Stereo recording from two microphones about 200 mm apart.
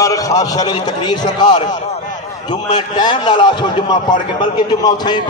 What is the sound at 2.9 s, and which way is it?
A man's voice, 20° left (ahead or behind).